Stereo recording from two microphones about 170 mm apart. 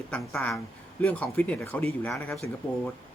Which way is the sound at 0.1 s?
10° left (ahead or behind).